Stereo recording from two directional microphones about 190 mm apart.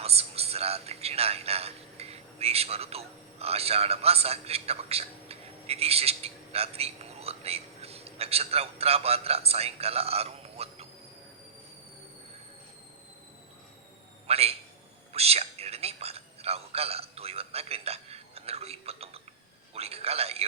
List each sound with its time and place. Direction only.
0.0 s a man's voice: 30° right (ahead or behind)
14.3 s a man's voice: 30° right (ahead or behind)
15.1 s a sound: 30° right (ahead or behind)